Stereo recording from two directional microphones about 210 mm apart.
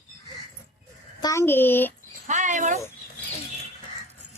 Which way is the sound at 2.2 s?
35° right (ahead or behind).